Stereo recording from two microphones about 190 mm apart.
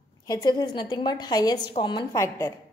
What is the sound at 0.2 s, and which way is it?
A woman's voice, 20° left (ahead or behind).